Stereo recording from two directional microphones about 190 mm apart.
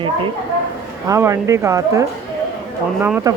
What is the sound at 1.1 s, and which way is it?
Speech, 15° right (ahead or behind).